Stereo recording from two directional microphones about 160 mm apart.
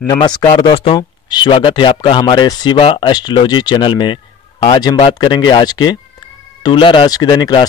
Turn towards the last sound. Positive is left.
turn(degrees=30)  # may be behind; listen again after turning